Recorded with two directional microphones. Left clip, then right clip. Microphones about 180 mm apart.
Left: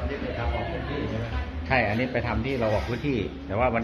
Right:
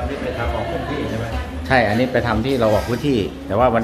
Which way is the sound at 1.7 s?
40° right (ahead or behind).